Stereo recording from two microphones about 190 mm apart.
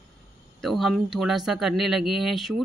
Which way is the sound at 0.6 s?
Centre (ahead or behind).